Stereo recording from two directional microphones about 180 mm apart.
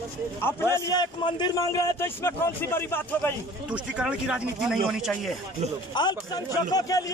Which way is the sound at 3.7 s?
5° right (ahead or behind).